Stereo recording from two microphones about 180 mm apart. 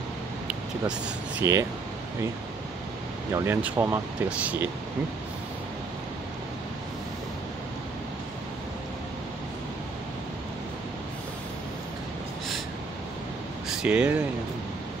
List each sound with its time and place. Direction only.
0.5 s a sound: 5° right (ahead or behind)
1.4 s speech: 15° right (ahead or behind)
3.4 s speech: 10° right (ahead or behind)
13.8 s speech: 5° right (ahead or behind)